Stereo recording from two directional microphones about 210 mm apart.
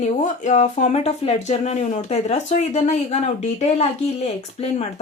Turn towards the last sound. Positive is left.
turn(degrees=30)  # may be behind; listen again after turning